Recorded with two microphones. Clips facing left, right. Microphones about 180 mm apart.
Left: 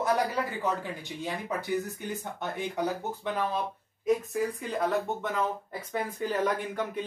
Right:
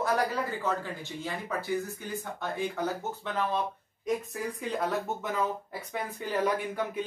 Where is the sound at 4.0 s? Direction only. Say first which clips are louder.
Left 5 dB; centre (ahead or behind).